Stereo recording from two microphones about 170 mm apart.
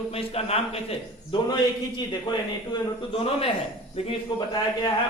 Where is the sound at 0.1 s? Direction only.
35° left (ahead or behind).